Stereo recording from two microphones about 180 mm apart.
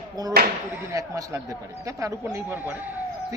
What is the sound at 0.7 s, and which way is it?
Speech, 15° right (ahead or behind).